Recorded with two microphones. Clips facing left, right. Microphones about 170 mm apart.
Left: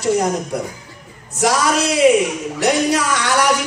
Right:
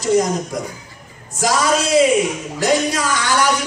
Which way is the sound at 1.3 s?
70° left (ahead or behind).